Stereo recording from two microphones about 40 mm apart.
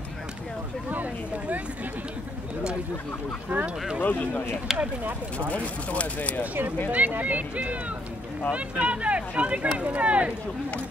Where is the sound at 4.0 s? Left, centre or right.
Left.